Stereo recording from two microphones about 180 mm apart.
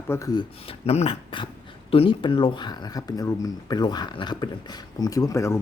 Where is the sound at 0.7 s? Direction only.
35° left (ahead or behind).